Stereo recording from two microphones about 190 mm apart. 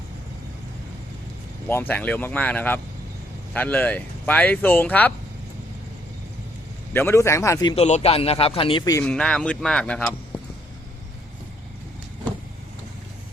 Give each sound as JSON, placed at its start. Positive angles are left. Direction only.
{"t": 1.6, "sound": "speech", "side_deg": 10}
{"t": 6.9, "sound": "speech", "side_deg": 10}
{"t": 7.9, "sound": "speech", "side_deg": 35}
{"t": 9.0, "sound": "speech", "side_deg": 5}